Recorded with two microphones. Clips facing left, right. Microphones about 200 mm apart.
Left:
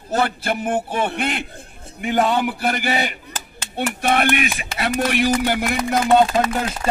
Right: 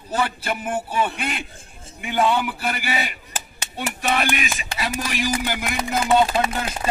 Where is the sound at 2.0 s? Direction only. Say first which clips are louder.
Left 2 dB; 45° left (ahead or behind).